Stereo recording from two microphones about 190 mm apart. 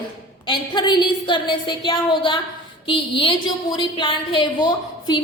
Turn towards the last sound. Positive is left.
turn(degrees=20)  # may be behind; listen again after turning